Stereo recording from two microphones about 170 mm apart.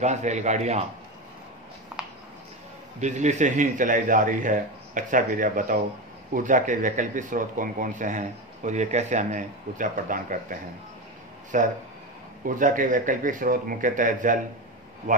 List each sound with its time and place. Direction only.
0.0 s speech: 45° right (ahead or behind)
3.0 s speech: 45° right (ahead or behind)